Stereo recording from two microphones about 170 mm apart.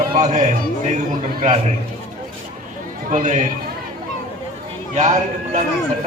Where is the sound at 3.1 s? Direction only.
50° right (ahead or behind).